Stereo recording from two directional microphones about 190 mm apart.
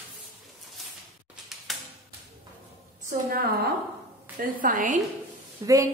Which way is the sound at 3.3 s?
50° right (ahead or behind).